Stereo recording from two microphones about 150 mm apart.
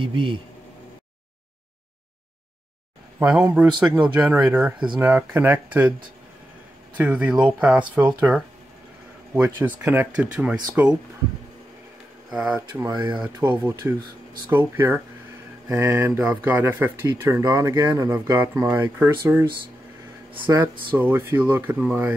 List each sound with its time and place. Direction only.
0.0 s speech: 35° right (ahead or behind)
3.2 s speech: 10° right (ahead or behind)
7.0 s speech: 10° right (ahead or behind)
12.3 s speech: 5° right (ahead or behind)
20.4 s speech: 15° right (ahead or behind)